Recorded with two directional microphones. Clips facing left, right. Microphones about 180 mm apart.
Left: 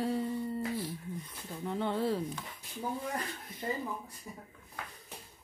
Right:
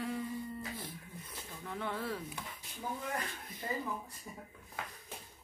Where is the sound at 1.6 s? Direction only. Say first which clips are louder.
Left 7 dB; 30° left (ahead or behind).